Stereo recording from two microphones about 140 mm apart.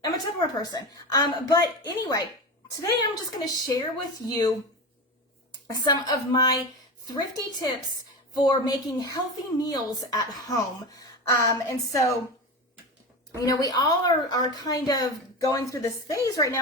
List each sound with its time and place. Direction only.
0.0 s a woman's voice: 25° left (ahead or behind)
5.8 s a woman's voice: 25° left (ahead or behind)
13.3 s a woman's voice: 25° left (ahead or behind)